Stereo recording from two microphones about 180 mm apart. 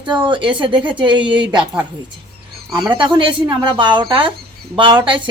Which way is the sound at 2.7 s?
25° right (ahead or behind).